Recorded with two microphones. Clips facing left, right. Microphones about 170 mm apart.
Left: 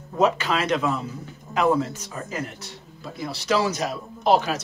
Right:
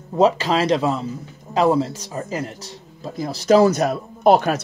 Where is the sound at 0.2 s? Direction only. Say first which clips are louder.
Right 5 dB; 35° right (ahead or behind).